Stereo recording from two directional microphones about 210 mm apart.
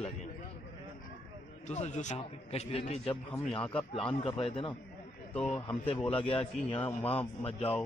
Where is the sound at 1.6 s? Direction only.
30° left (ahead or behind).